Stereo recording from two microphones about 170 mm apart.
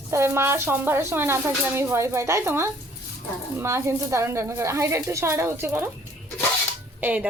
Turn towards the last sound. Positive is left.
turn(degrees=-10)  # may be behind; listen again after turning